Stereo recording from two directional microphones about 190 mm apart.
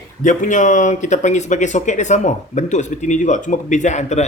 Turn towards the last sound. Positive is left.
turn(degrees=35)  # may be behind; listen again after turning